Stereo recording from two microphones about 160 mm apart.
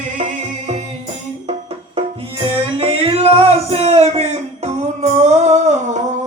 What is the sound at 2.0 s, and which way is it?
Music, 35° right (ahead or behind).